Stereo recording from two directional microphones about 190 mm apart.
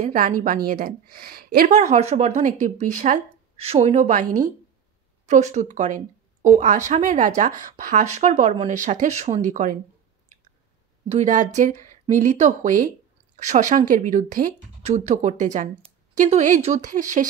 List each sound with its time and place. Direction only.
0.0 s speech: 40° right (ahead or behind)
11.1 s speech: 40° right (ahead or behind)